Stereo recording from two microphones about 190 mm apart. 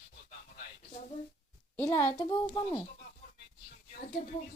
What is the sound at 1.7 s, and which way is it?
Speech, 10° left (ahead or behind).